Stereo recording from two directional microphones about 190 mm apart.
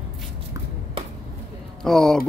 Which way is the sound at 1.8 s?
5° left (ahead or behind).